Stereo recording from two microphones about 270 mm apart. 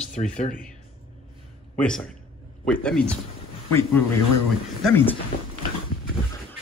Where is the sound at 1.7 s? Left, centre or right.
Centre.